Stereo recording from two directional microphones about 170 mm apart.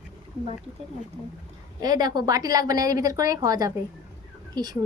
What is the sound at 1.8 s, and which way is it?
A woman's voice, 25° right (ahead or behind).